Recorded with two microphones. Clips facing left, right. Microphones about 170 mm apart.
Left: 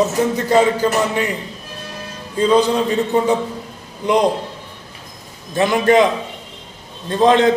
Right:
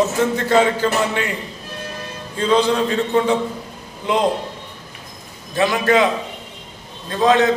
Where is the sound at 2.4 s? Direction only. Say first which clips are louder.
Left 2 dB; 15° left (ahead or behind).